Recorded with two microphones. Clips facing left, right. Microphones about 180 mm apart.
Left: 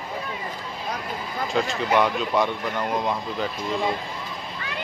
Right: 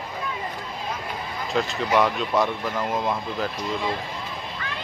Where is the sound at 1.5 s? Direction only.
Centre (ahead or behind).